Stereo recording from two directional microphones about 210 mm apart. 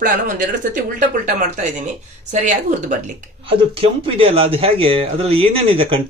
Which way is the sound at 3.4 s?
25° right (ahead or behind).